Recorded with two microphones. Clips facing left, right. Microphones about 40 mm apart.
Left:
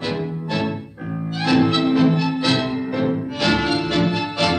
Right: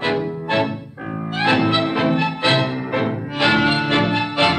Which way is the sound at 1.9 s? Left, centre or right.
Right.